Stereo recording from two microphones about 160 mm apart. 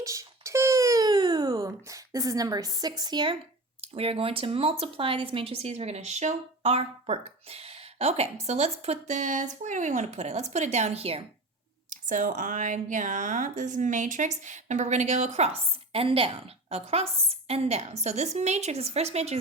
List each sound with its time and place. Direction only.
0.0 s babbling: 20° right (ahead or behind)
3.8 s speech: 35° right (ahead or behind)
11.9 s speech: 55° right (ahead or behind)